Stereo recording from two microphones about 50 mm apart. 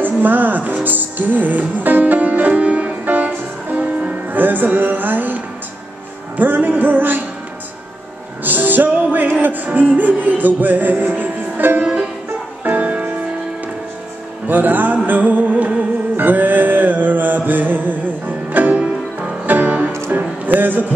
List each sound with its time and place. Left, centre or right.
0.0 s speech: right
0.8 s music: right
8.5 s music: right
11.8 s music: right
12.6 s music: right
14.5 s music: right
18.8 s music: right
19.4 s music: right